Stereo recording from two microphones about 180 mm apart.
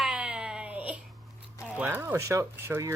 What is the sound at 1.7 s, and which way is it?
Speech, 10° right (ahead or behind).